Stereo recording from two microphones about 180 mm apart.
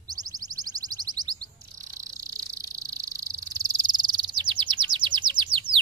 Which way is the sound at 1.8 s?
20° right (ahead or behind).